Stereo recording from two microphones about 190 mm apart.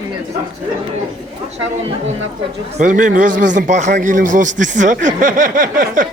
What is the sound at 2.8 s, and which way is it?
A man's voice, 40° right (ahead or behind).